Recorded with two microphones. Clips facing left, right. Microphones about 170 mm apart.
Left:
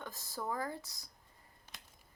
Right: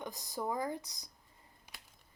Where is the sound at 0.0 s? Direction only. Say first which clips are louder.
Right 3 dB; 15° right (ahead or behind).